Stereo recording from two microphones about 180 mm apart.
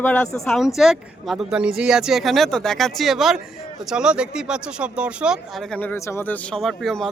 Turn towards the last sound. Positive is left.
turn(degrees=0)  # may be behind; listen again after turning